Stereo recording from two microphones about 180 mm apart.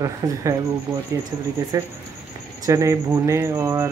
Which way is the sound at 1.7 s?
20° right (ahead or behind).